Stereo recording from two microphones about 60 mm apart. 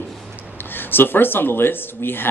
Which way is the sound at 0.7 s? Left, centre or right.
Left.